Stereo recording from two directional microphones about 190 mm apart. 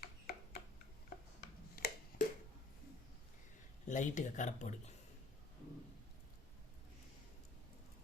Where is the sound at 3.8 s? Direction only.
40° left (ahead or behind).